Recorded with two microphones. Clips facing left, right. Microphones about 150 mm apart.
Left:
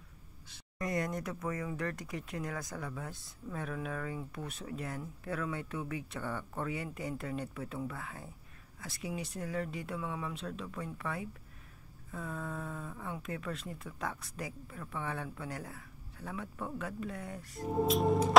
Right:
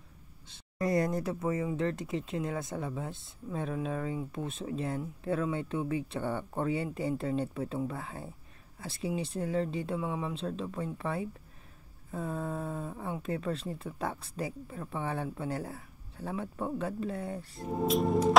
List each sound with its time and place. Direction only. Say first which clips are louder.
0.5 s speech: right 7 dB; 30° right (ahead or behind)
17.8 s music: right 4 dB; centre (ahead or behind)